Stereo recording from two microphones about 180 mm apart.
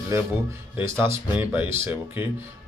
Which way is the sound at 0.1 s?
15° right (ahead or behind).